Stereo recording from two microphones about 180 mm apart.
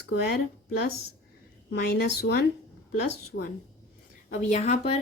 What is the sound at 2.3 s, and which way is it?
Speech, 80° left.